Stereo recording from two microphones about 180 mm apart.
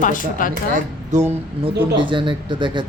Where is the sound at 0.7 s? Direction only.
40° right (ahead or behind).